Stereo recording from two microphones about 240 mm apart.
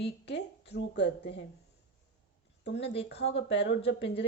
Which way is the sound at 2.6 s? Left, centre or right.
Left.